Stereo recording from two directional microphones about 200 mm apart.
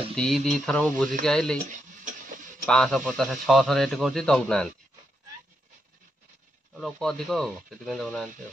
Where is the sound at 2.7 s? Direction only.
Centre (ahead or behind).